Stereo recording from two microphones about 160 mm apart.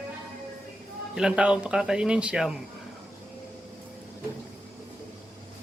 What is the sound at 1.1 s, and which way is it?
Speech, 5° right (ahead or behind).